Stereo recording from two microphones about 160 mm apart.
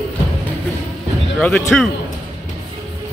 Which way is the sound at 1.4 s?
Centre (ahead or behind).